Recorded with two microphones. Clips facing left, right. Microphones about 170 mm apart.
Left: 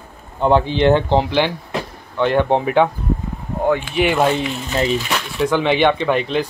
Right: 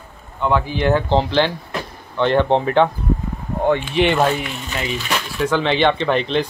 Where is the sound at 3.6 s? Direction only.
Centre (ahead or behind).